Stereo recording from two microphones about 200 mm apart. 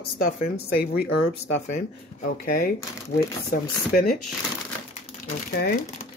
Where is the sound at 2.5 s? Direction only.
45° left (ahead or behind).